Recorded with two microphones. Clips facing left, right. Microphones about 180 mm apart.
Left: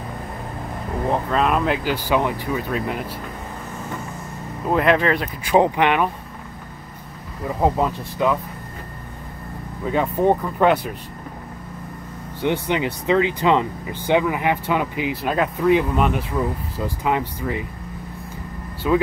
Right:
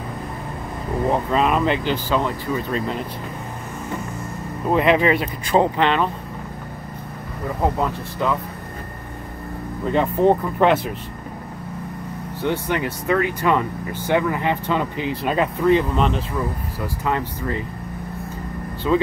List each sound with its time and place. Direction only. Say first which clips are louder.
1.3 s speech: even; centre (ahead or behind)
2.0 s speech: left 1 dB; 15° left (ahead or behind)
4.6 s speech: right 1 dB; centre (ahead or behind)
5.4 s speech: left 3 dB; 10° left (ahead or behind)
7.6 s speech: left 2 dB; 20° left (ahead or behind)
9.8 s speech: right 1 dB; 5° left (ahead or behind)
12.4 s speech: left 1 dB; 20° left (ahead or behind)
18.8 s speech: even; 10° left (ahead or behind)